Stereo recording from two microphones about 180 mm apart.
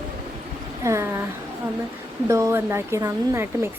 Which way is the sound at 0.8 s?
15° right (ahead or behind).